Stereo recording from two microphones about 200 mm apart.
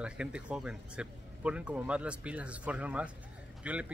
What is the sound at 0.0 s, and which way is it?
Speech, 5° right (ahead or behind).